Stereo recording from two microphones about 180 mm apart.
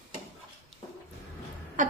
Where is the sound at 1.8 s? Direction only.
45° right (ahead or behind).